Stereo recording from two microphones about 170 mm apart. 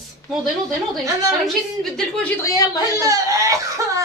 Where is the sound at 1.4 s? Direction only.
Centre (ahead or behind); by 2.8 s 20° left (ahead or behind).